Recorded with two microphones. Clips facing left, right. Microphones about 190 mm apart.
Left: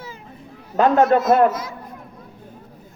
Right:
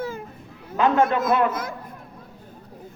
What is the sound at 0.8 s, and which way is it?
Speech, 40° left (ahead or behind).